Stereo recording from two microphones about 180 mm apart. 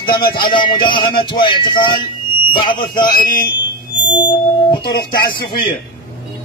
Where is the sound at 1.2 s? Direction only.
25° left (ahead or behind).